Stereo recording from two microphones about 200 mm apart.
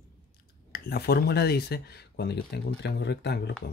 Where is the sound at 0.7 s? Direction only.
50° left (ahead or behind).